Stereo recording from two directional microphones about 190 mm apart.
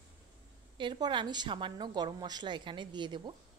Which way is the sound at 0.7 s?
25° right (ahead or behind).